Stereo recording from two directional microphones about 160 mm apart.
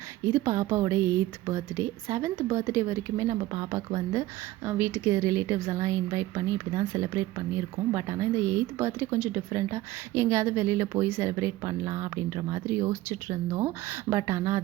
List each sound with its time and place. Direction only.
0.3 s a woman's voice: 20° right (ahead or behind)